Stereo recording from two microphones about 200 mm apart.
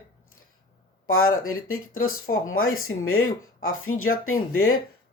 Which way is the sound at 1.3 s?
90° left.